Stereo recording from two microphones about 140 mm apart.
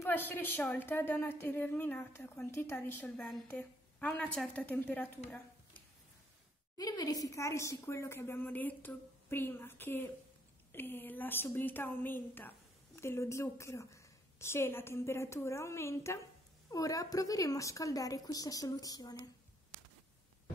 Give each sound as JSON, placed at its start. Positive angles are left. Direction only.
{"t": 0.0, "sound": "a woman's voice", "side_deg": 15}
{"t": 6.8, "sound": "a woman's voice", "side_deg": 25}